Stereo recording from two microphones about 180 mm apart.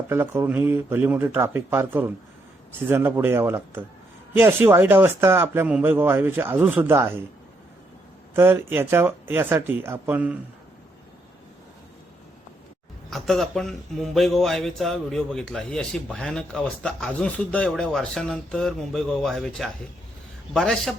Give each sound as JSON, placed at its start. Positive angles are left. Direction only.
{"t": 0.1, "sound": "speech", "side_deg": -15}
{"t": 8.4, "sound": "speech", "side_deg": -10}
{"t": 13.1, "sound": "speech", "side_deg": 0}